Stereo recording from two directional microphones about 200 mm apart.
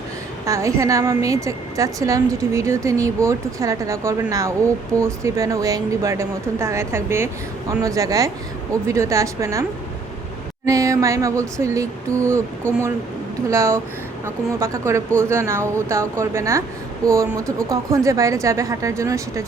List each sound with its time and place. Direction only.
0.4 s a woman's voice: 15° right (ahead or behind)
10.7 s a woman's voice: 15° right (ahead or behind)